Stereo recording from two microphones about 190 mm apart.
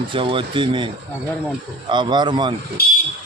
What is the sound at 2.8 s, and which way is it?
Speech, 55° left (ahead or behind).